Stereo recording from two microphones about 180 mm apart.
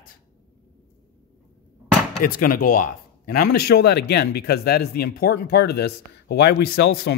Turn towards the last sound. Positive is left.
turn(degrees=65)  # may be behind; listen again after turning